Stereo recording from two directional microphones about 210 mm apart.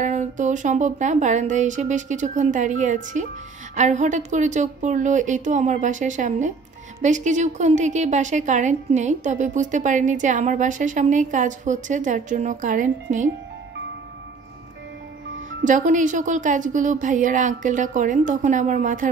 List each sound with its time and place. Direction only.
0.0 s a woman's voice: 35° right (ahead or behind)
15.6 s a woman's voice: 35° right (ahead or behind)